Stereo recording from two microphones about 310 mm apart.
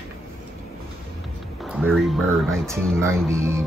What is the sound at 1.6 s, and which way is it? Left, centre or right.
Speech, centre.